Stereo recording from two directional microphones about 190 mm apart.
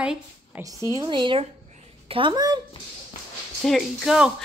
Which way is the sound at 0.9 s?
25° right (ahead or behind).